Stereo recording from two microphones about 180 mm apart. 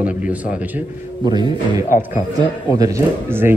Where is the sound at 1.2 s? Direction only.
25° right (ahead or behind).